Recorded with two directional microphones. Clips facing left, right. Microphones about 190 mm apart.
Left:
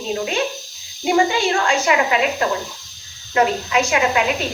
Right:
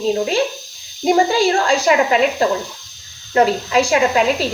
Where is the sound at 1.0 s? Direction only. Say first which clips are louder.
Right 3 dB; 35° right (ahead or behind).